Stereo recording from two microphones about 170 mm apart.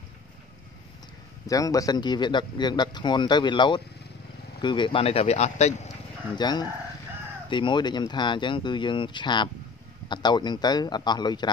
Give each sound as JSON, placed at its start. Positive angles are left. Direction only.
{"t": 1.5, "sound": "speech", "side_deg": 20}
{"t": 6.3, "sound": "speech", "side_deg": 25}